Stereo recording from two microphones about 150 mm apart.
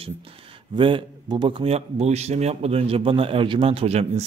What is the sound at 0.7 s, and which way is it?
A man's voice, 35° right (ahead or behind).